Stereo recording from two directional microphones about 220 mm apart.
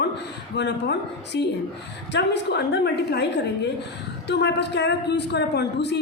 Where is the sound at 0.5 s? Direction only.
50° left (ahead or behind).